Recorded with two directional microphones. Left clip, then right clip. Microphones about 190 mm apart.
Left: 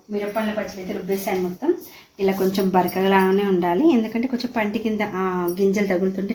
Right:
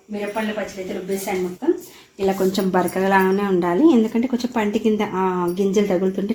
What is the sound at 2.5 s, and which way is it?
Speech, 25° right (ahead or behind).